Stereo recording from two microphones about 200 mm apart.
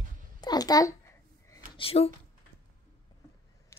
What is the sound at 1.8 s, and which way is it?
Speech, 30° left (ahead or behind).